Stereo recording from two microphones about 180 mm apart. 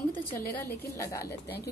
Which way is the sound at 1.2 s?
60° left (ahead or behind).